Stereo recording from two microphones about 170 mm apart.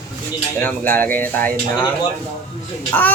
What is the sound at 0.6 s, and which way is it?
Speech, 10° left (ahead or behind).